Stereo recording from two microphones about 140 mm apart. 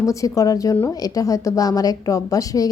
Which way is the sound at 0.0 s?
25° left (ahead or behind).